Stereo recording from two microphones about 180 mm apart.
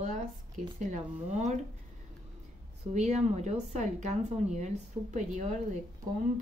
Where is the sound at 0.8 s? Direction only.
40° right (ahead or behind).